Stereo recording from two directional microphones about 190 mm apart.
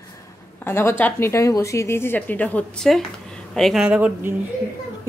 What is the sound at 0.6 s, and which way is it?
A woman's voice, 10° left (ahead or behind).